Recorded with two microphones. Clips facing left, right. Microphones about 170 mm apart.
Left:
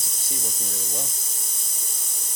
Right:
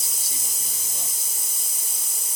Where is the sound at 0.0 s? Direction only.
5° right (ahead or behind).